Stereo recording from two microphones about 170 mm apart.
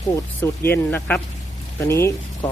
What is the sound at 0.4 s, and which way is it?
Speech, 10° left (ahead or behind).